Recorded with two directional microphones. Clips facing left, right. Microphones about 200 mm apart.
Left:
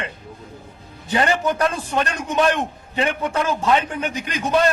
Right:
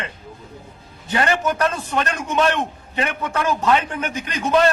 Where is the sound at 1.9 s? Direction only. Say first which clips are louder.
Even; 15° left (ahead or behind).